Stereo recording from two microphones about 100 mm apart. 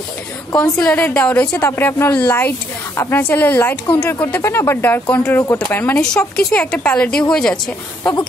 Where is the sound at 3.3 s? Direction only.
20° left (ahead or behind).